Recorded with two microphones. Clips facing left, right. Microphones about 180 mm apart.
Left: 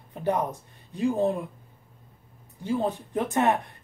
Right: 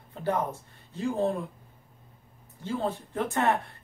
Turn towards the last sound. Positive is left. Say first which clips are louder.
# left 3 dB
turn(degrees=20)  # may be behind; listen again after turning